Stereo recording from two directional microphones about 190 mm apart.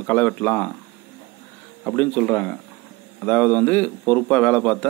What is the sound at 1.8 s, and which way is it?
A man's voice, 5° left (ahead or behind).